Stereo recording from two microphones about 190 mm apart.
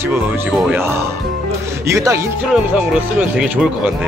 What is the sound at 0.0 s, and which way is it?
Speech, 10° right (ahead or behind).